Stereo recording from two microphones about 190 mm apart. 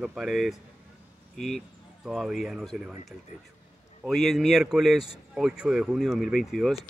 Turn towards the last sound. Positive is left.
turn(degrees=0)  # may be behind; listen again after turning